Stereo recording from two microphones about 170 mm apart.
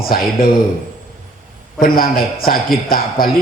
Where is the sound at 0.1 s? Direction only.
60° left (ahead or behind).